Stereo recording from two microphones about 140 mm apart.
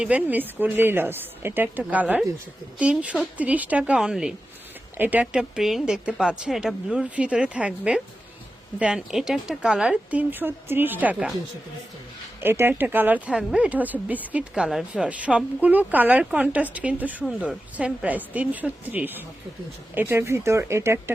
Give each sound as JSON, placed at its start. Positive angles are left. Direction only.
{"t": 0.0, "sound": "speech", "side_deg": -10}
{"t": 12.4, "sound": "speech", "side_deg": -15}